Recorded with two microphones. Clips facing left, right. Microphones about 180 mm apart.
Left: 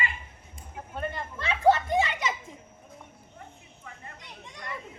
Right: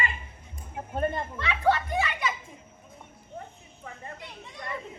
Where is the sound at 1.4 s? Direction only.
25° left (ahead or behind).